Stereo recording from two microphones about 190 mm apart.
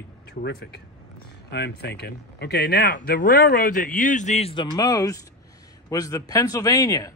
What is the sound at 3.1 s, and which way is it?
A man's voice, 50° left (ahead or behind).